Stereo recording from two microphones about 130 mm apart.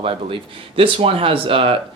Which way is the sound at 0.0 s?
45° right (ahead or behind).